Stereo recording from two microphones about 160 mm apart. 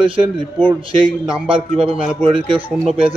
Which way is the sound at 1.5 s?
35° right (ahead or behind).